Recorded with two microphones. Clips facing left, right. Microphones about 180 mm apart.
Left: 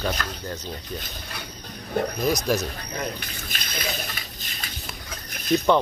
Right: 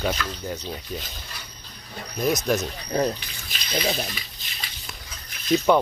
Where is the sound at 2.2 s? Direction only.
Centre (ahead or behind).